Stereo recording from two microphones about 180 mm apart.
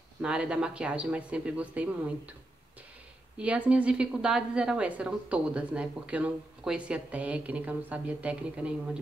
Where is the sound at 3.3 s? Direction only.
5° right (ahead or behind).